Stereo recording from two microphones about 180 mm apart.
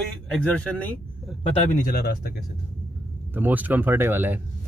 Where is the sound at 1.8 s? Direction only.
55° left (ahead or behind).